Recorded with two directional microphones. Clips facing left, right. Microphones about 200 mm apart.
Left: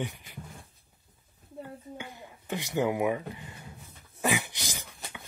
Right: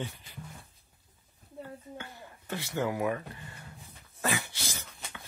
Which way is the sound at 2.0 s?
15° left (ahead or behind).